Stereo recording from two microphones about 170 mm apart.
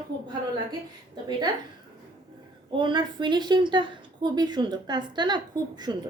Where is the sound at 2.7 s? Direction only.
30° right (ahead or behind).